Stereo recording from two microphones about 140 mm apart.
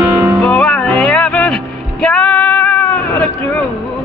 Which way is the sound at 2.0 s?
5° left (ahead or behind).